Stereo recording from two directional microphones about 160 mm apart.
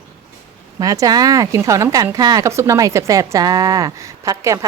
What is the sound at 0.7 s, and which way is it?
Speech, 20° right (ahead or behind).